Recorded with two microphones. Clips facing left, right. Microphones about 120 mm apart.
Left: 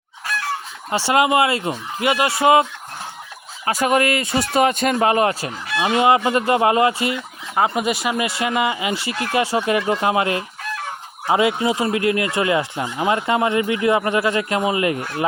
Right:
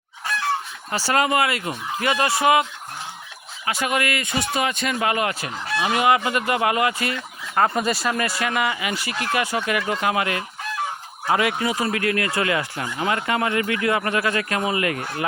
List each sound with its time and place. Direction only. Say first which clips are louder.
0.9 s speech: left 4 dB; 25° left (ahead or behind)
3.7 s speech: left 6 dB; 35° left (ahead or behind)
7.2 s speech: left 1 dB; 10° left (ahead or behind)